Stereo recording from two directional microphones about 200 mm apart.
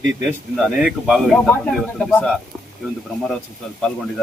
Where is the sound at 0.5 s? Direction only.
5° right (ahead or behind).